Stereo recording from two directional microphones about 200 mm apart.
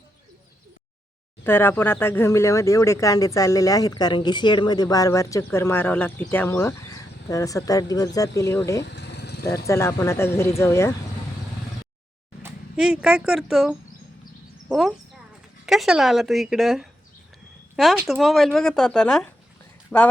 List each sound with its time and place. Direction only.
1.5 s speech: 10° left (ahead or behind)
8.8 s vehicle: 55° left (ahead or behind)
9.5 s speech: 15° left (ahead or behind)
12.4 s speech: 5° right (ahead or behind)